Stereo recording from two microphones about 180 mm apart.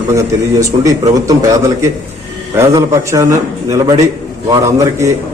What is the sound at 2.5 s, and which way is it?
A man's voice, 15° right (ahead or behind).